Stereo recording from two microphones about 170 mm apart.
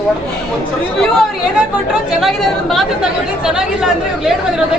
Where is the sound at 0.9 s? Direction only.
Centre (ahead or behind).